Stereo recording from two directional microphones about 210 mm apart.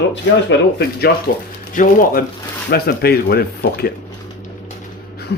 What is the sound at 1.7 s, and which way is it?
Speech, 40° left (ahead or behind).